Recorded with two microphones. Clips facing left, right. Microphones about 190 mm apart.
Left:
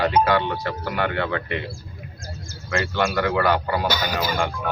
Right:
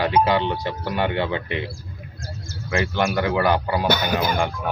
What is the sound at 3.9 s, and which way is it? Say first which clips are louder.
Speech: right 3 dB; 55° right (ahead or behind).